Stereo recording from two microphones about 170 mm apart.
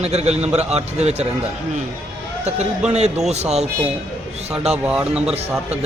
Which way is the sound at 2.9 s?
40° right (ahead or behind).